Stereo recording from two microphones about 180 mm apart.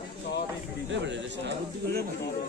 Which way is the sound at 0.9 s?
85° right.